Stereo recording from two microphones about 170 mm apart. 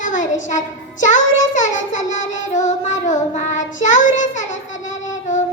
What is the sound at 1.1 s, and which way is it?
Child singing, 45° left (ahead or behind).